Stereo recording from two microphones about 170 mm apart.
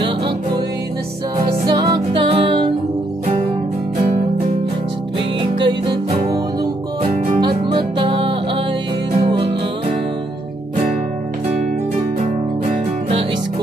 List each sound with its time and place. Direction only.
1.4 s music: 25° right (ahead or behind)
5.7 s music: 25° right (ahead or behind)